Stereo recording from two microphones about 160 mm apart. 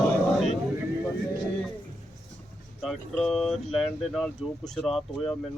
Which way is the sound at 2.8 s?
5° left (ahead or behind).